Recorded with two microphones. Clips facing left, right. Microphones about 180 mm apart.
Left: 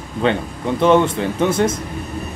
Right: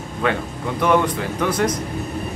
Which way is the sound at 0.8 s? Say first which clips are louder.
Left 4 dB; 25° left (ahead or behind).